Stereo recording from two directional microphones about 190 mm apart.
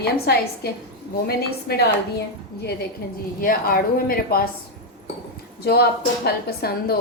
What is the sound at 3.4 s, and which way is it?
A woman's voice, 50° left (ahead or behind).